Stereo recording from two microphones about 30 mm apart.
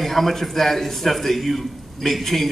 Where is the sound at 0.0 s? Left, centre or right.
Centre.